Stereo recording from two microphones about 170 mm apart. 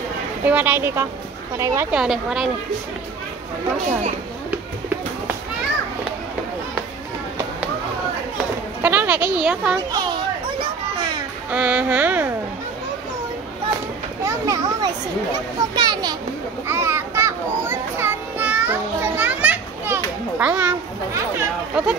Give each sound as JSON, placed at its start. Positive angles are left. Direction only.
{"t": 0.5, "sound": "speech", "side_deg": -10}
{"t": 2.0, "sound": "speech", "side_deg": -5}
{"t": 8.8, "sound": "speech", "side_deg": -10}
{"t": 9.8, "sound": "children playing", "side_deg": -25}
{"t": 11.5, "sound": "speech", "side_deg": -10}
{"t": 14.2, "sound": "a child's voice", "side_deg": -20}
{"t": 16.6, "sound": "children playing", "side_deg": -15}